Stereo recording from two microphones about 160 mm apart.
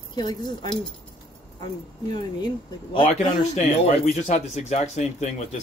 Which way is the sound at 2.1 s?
30° left (ahead or behind).